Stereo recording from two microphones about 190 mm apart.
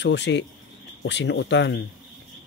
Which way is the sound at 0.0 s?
65° left (ahead or behind).